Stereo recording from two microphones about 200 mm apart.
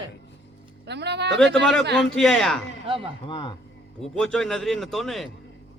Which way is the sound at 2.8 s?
25° right (ahead or behind).